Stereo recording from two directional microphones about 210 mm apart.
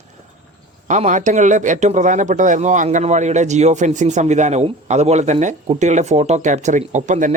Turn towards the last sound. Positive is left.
turn(degrees=-35)  # may be behind; listen again after turning